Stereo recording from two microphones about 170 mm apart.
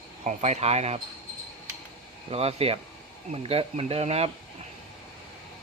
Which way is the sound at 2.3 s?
35° right (ahead or behind).